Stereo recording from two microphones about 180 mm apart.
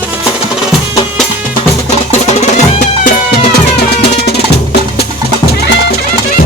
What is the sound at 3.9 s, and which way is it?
Music, 65° left (ahead or behind).